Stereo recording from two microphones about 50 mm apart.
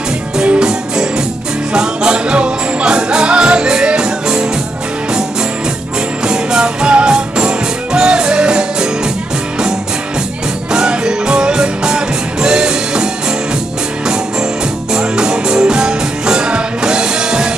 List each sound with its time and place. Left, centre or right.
0.4 s music: centre
6.2 s music: centre
10.7 s music: centre
14.9 s music: centre